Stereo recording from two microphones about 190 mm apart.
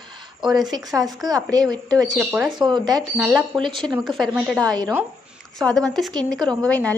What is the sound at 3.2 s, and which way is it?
Speech, centre (ahead or behind).